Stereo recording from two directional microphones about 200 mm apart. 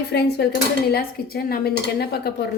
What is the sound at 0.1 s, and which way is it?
A woman's voice, 55° left (ahead or behind).